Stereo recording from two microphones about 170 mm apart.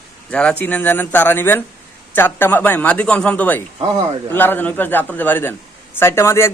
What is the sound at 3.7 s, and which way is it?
Speech, 25° right (ahead or behind).